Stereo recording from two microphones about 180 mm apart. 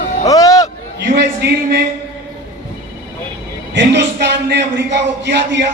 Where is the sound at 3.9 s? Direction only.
70° right (ahead or behind).